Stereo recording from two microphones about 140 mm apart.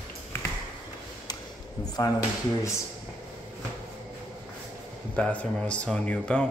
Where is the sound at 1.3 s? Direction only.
30° left (ahead or behind).